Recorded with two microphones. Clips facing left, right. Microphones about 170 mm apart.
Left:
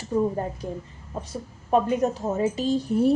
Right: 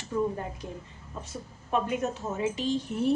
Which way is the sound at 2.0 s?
35° left (ahead or behind).